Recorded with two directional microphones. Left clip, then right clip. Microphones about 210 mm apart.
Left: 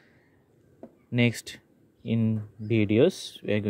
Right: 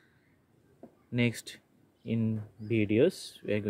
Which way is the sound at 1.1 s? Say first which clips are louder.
Left 5 dB; 25° left (ahead or behind).